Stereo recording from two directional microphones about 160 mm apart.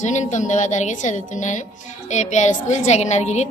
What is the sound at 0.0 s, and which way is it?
A woman's voice, 50° left (ahead or behind).